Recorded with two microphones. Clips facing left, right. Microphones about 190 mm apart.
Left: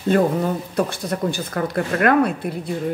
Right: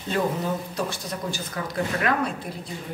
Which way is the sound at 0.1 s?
55° left (ahead or behind).